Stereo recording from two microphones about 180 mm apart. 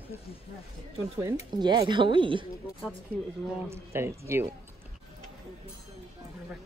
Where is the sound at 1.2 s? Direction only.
20° right (ahead or behind).